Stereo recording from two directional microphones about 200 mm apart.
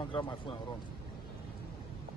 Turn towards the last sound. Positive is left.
turn(degrees=25)  # may be behind; listen again after turning